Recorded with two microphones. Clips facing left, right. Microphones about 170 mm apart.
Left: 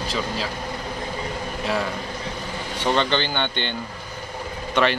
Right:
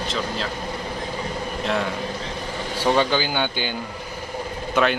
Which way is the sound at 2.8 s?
5° right (ahead or behind).